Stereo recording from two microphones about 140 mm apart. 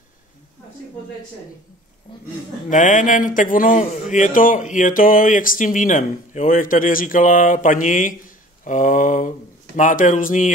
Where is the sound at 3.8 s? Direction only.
60° left (ahead or behind).